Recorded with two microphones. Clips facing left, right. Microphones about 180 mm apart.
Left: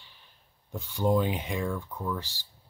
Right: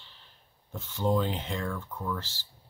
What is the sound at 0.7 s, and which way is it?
Speech, 15° left (ahead or behind).